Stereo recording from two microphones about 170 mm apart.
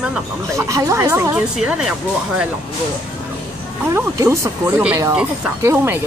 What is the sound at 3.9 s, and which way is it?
Speech, 15° right (ahead or behind).